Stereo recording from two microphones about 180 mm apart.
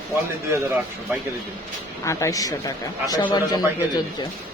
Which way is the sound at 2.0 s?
20° left (ahead or behind).